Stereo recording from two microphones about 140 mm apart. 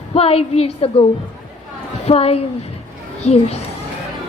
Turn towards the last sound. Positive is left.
turn(degrees=50)  # may be behind; listen again after turning